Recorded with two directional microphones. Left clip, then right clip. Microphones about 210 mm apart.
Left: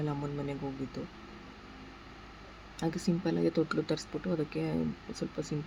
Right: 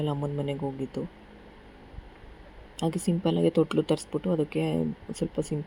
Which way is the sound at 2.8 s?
15° right (ahead or behind).